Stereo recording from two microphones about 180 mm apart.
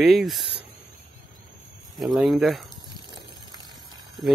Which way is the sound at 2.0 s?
Centre (ahead or behind).